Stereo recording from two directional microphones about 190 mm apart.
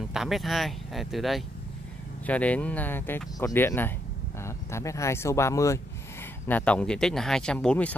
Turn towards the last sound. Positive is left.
turn(degrees=5)  # may be behind; listen again after turning